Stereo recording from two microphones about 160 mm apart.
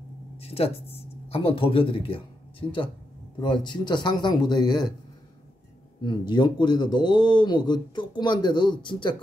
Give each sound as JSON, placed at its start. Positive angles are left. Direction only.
{"t": 0.4, "sound": "speech", "side_deg": 40}
{"t": 3.3, "sound": "speech", "side_deg": 30}
{"t": 6.0, "sound": "speech", "side_deg": 30}